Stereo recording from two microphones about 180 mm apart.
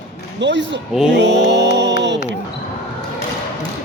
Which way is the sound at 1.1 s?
75° right (ahead or behind).